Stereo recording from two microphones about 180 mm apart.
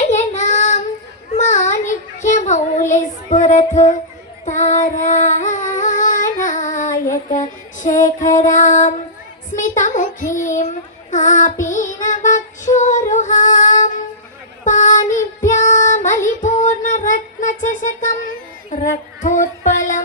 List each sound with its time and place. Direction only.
0.1 s child singing: 40° left (ahead or behind)
3.3 s music: 40° left (ahead or behind)
4.4 s female singing: 40° left (ahead or behind)
7.9 s music: 15° left (ahead or behind)
8.3 s music: 45° left (ahead or behind)
9.5 s a sound: 45° left (ahead or behind)
10.4 s child singing: 45° left (ahead or behind)
18.7 s female singing: 45° left (ahead or behind)